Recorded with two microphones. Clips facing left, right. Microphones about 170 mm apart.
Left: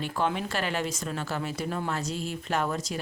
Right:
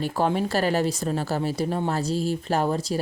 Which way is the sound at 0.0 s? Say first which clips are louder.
Right 5 dB; 40° right (ahead or behind).